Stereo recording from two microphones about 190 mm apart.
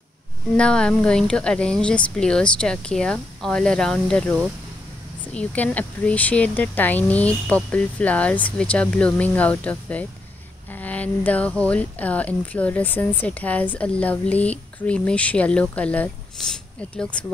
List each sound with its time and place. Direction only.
0.6 s speech: 5° left (ahead or behind)